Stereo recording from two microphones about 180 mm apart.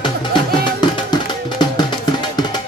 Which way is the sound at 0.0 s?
25° left (ahead or behind).